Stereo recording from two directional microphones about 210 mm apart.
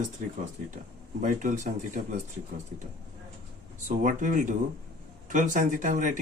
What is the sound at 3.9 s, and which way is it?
Speech, 40° right (ahead or behind).